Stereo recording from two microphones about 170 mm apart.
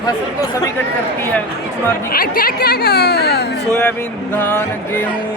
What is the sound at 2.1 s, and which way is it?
Speech, 60° left (ahead or behind).